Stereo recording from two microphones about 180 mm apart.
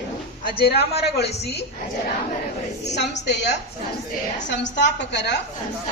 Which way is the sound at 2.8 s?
70° left (ahead or behind).